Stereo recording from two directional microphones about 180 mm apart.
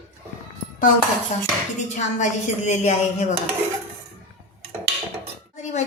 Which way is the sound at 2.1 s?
40° left (ahead or behind).